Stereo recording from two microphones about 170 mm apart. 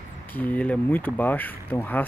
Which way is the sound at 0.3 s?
10° left (ahead or behind).